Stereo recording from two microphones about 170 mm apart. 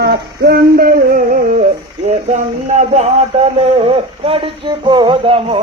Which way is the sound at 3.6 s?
35° right (ahead or behind).